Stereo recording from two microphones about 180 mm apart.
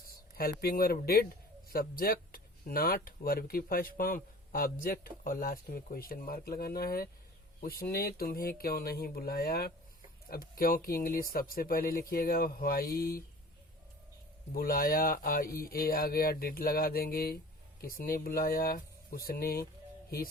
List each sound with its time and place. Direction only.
0.3 s speech: 55° left (ahead or behind)
14.5 s speech: 55° left (ahead or behind)